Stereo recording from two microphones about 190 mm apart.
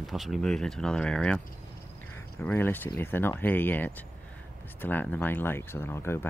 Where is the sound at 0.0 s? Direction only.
Centre (ahead or behind).